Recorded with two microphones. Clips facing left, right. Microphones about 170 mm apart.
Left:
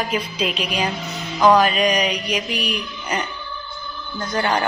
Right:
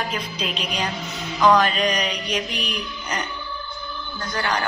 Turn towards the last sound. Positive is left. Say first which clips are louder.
# left 4 dB
turn(degrees=25)  # may be behind; listen again after turning